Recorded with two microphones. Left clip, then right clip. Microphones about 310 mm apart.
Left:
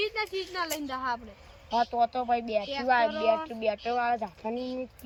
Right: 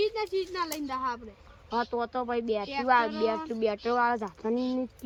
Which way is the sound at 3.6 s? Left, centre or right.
Centre.